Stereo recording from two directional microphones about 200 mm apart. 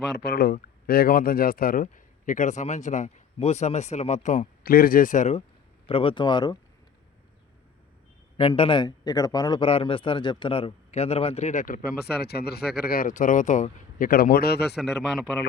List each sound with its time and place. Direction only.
0.1 s a man's voice: 50° left (ahead or behind)
5.8 s speech: 25° left (ahead or behind)
8.4 s a man's voice: 25° left (ahead or behind); by 14.8 s 55° left (ahead or behind)